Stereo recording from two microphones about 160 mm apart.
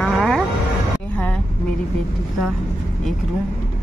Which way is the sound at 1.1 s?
10° left (ahead or behind).